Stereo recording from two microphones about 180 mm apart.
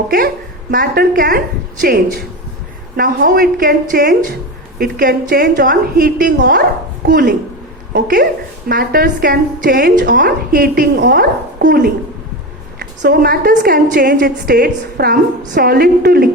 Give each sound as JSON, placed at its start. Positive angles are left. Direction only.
{"t": 0.7, "sound": "a woman's voice", "side_deg": -55}